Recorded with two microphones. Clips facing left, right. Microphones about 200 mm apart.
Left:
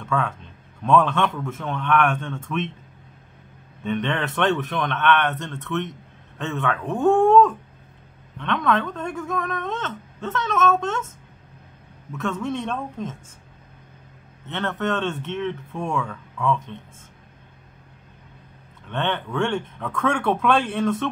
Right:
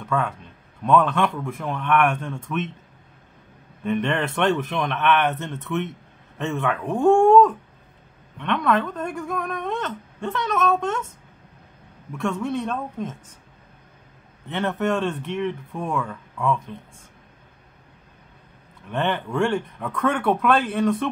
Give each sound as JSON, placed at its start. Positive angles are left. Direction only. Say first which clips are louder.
{"t": 0.0, "sound": "speech", "louder": "even", "side_deg": -5}
{"t": 3.8, "sound": "speech", "louder": "right 2 dB", "side_deg": -5}
{"t": 5.4, "sound": "speech", "louder": "right 1 dB", "side_deg": -15}
{"t": 12.3, "sound": "speech", "louder": "right 1 dB", "side_deg": -5}
{"t": 14.5, "sound": "speech", "louder": "right 2 dB", "side_deg": -15}
{"t": 18.9, "sound": "speech", "louder": "right 1 dB", "side_deg": -5}